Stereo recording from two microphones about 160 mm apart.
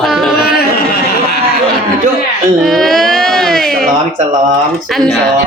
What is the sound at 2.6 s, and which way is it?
Music, centre (ahead or behind).